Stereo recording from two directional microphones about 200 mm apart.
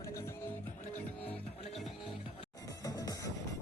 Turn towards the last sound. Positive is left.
turn(degrees=20)  # may be behind; listen again after turning